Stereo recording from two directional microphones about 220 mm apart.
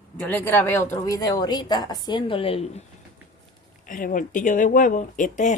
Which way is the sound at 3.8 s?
35° left (ahead or behind).